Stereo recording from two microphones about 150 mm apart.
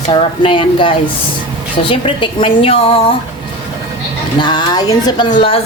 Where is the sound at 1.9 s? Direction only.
35° left (ahead or behind).